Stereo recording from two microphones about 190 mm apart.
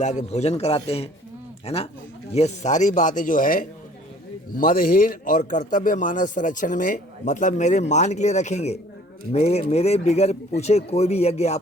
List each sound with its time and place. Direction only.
0.0 s a man's voice: 40° left (ahead or behind)